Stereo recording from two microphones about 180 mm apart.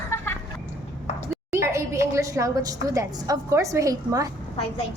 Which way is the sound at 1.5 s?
15° right (ahead or behind).